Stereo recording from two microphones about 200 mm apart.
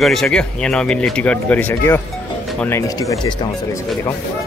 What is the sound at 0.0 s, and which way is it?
Speech, centre (ahead or behind).